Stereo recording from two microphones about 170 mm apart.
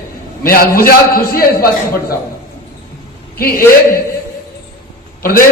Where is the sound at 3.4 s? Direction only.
60° left (ahead or behind).